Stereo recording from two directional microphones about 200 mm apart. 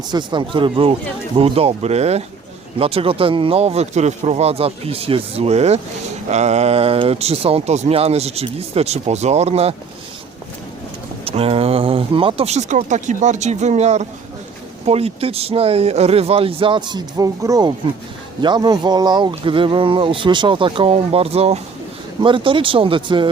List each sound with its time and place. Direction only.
0.1 s speech: 20° right (ahead or behind)
11.3 s speech: 30° right (ahead or behind)